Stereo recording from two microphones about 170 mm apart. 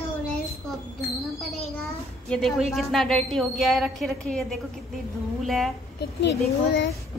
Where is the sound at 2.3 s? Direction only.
Centre (ahead or behind).